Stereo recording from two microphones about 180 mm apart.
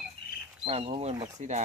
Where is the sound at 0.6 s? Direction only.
35° right (ahead or behind).